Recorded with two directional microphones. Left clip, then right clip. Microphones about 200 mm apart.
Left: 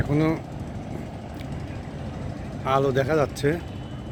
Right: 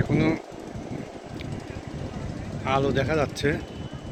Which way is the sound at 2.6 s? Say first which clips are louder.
Left 2 dB; 25° left (ahead or behind).